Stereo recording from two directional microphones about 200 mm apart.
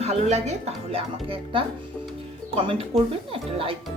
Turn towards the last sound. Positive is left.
turn(degrees=-30)  # may be behind; listen again after turning